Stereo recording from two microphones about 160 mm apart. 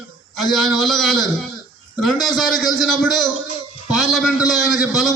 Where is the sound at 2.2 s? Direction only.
Centre (ahead or behind).